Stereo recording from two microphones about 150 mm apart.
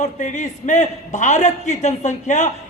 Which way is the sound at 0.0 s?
55° left (ahead or behind).